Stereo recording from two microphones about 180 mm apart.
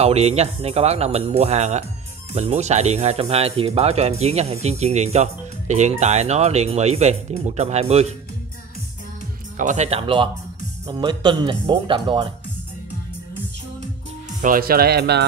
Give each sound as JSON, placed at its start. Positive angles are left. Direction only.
{"t": 0.0, "sound": "speech", "side_deg": -35}
{"t": 9.6, "sound": "speech", "side_deg": -40}
{"t": 14.4, "sound": "speech", "side_deg": -50}